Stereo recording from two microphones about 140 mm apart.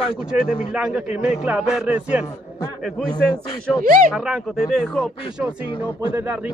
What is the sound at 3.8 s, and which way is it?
Speech, 90° right.